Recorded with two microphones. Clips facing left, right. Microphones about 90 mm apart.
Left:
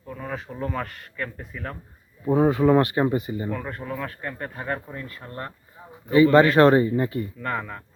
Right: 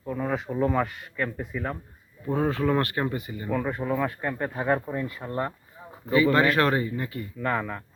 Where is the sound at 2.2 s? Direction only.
15° left (ahead or behind).